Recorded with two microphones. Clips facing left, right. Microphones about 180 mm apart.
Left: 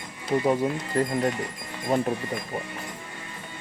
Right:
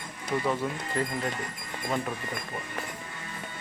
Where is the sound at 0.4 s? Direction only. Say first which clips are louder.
Left 6 dB; 40° left (ahead or behind).